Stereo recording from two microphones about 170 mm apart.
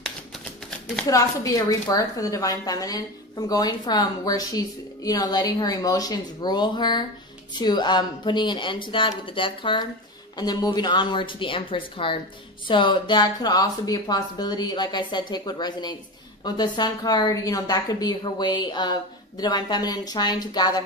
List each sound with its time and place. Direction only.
1.1 s a woman's voice: 20° left (ahead or behind)